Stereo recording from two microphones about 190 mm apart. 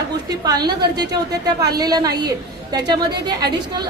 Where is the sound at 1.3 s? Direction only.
55° right (ahead or behind).